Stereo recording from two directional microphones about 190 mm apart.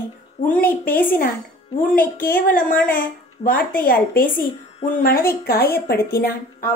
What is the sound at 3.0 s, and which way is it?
A woman's voice, 50° left (ahead or behind).